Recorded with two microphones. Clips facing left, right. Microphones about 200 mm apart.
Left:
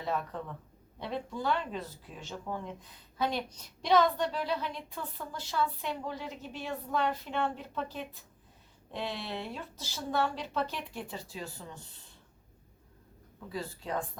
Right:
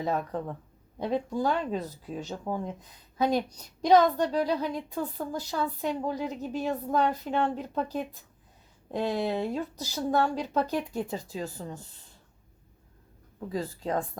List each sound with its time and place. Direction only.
0.0 s speech: 40° right (ahead or behind)
13.5 s speech: 45° right (ahead or behind)